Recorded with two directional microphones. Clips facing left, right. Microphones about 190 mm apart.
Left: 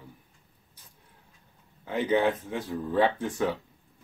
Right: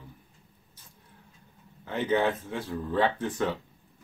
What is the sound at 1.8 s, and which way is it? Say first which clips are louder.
Speech: left 1 dB; 10° left (ahead or behind).